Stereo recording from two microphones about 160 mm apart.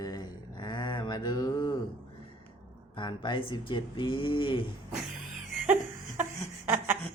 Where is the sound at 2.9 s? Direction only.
30° left (ahead or behind).